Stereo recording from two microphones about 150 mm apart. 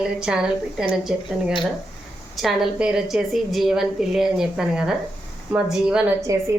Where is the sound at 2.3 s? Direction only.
Centre (ahead or behind).